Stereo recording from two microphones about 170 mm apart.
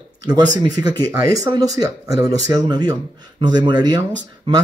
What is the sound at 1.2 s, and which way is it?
Speech, 20° right (ahead or behind).